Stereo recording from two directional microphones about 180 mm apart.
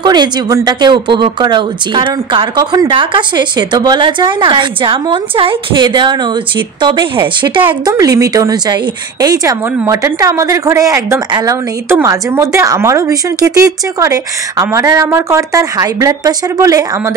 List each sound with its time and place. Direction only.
0.0 s a woman's voice: 25° right (ahead or behind)